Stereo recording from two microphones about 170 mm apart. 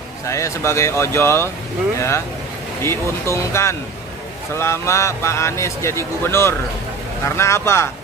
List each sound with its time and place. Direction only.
0.3 s a man's voice: 15° left (ahead or behind)